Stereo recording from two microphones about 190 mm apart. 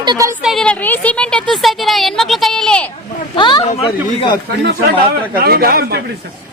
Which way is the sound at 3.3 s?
25° left (ahead or behind).